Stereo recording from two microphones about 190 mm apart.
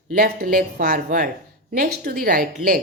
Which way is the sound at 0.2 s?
50° right (ahead or behind).